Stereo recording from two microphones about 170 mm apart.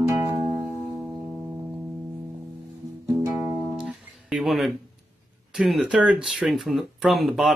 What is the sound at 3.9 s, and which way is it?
Music, centre (ahead or behind).